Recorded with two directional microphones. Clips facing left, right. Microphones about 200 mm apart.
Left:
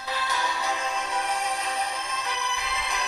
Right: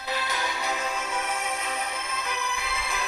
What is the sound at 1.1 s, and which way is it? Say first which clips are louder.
Music: left 2 dB; 35° left (ahead or behind).